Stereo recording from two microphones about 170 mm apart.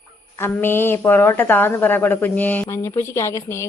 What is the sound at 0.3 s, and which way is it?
Speech, 15° left (ahead or behind).